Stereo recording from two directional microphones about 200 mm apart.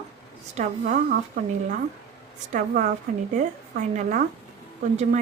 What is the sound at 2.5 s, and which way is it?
A woman's voice, 45° right (ahead or behind).